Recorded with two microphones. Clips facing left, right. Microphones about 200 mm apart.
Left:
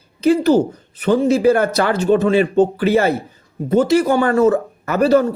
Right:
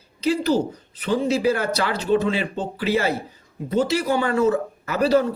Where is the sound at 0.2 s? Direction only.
50° left (ahead or behind).